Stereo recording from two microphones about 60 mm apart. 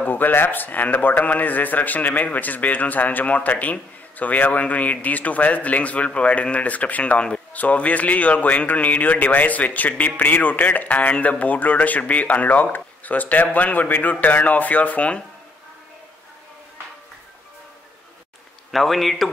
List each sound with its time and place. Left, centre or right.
0.0 s a man's voice: left
18.7 s a man's voice: centre